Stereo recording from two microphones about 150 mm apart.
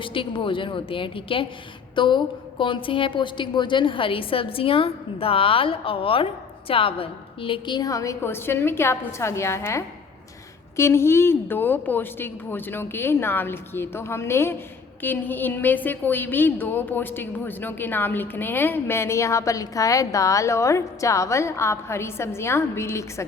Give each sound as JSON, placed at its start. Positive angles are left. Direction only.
{"t": 0.0, "sound": "a woman's voice", "side_deg": 35}